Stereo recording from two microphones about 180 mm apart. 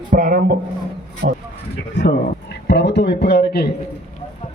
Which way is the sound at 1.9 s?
75° left (ahead or behind).